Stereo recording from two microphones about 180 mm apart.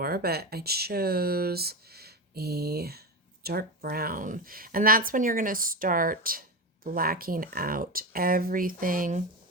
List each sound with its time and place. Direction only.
0.0 s speech: 55° right (ahead or behind)